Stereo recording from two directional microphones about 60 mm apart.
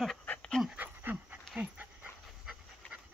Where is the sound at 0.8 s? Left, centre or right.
Right.